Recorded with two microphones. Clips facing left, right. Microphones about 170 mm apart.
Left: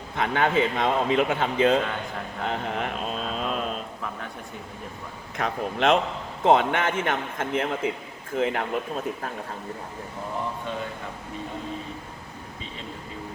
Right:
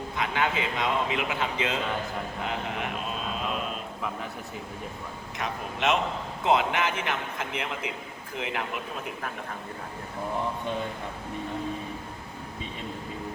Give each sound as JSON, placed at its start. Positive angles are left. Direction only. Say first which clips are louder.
{"t": 0.2, "sound": "speech", "louder": "left 6 dB", "side_deg": 45}
{"t": 3.3, "sound": "a sound", "louder": "left 3 dB", "side_deg": 40}
{"t": 5.4, "sound": "speech", "louder": "left 6 dB", "side_deg": 50}